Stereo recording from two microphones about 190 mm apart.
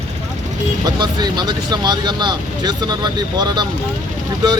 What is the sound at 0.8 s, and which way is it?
Speech, 20° right (ahead or behind).